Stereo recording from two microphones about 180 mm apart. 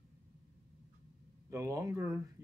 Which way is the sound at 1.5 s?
15° right (ahead or behind).